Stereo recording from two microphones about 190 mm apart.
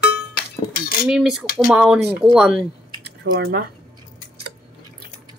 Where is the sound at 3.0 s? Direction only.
55° right (ahead or behind).